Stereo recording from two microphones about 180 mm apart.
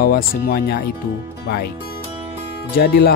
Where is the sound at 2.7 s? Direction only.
60° left (ahead or behind).